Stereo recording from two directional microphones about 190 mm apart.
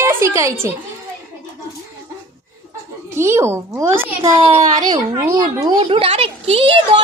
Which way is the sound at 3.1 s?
15° right (ahead or behind).